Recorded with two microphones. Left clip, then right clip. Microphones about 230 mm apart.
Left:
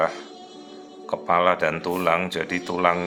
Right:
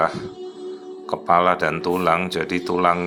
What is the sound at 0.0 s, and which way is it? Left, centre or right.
Speech, centre.